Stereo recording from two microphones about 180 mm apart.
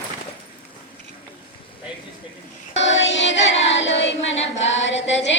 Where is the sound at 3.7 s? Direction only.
90° left.